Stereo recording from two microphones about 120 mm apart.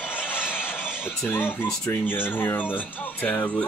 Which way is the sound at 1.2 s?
15° left (ahead or behind).